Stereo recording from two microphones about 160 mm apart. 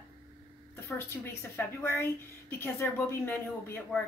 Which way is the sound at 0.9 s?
10° left (ahead or behind).